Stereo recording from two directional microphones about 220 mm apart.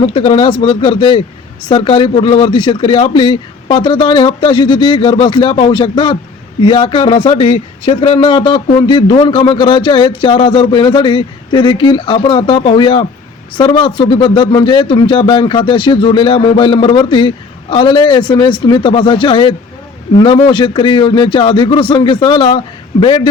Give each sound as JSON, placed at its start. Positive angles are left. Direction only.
{"t": 0.0, "sound": "speech", "side_deg": 25}